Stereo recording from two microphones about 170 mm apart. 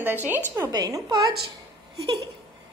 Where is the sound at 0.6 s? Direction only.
25° right (ahead or behind).